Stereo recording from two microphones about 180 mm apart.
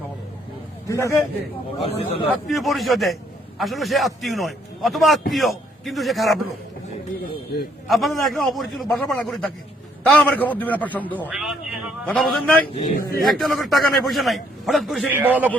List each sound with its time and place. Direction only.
0.9 s a man's voice: 15° left (ahead or behind)
1.8 s speech: 30° left (ahead or behind)
2.5 s a man's voice: centre (ahead or behind)
7.9 s a man's voice: centre (ahead or behind)
11.3 s a man's voice: centre (ahead or behind)
12.7 s speech: 45° left (ahead or behind)
13.2 s a man's voice: centre (ahead or behind)